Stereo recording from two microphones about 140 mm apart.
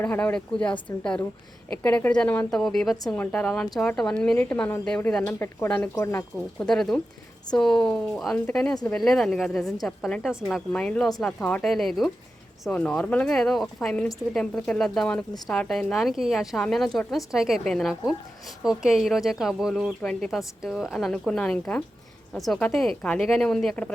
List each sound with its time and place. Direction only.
0.0 s speech: 10° left (ahead or behind)
6.6 s speech: 5° left (ahead or behind)